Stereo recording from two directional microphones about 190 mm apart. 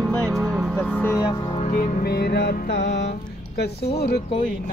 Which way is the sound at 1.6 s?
35° left (ahead or behind).